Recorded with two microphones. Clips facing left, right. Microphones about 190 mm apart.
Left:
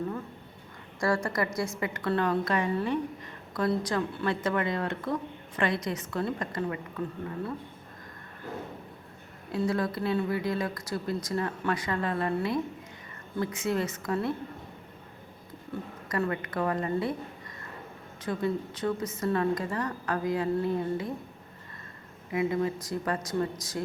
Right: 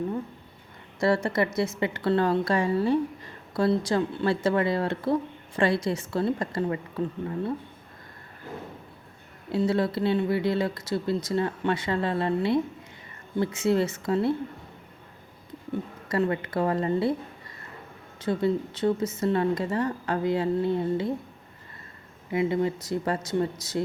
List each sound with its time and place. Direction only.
1.0 s a woman's voice: 25° right (ahead or behind)
9.5 s speech: 25° right (ahead or behind)
16.0 s speech: 25° right (ahead or behind)
18.2 s speech: 30° right (ahead or behind)
22.3 s speech: 25° right (ahead or behind)